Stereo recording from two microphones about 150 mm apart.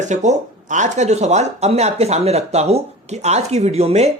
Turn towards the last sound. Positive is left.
turn(degrees=-45)  # may be behind; listen again after turning